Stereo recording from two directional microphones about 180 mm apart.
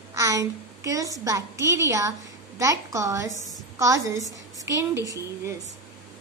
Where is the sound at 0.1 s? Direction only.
15° right (ahead or behind).